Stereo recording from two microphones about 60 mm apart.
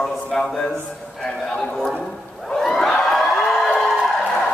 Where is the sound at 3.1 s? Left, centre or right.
Centre.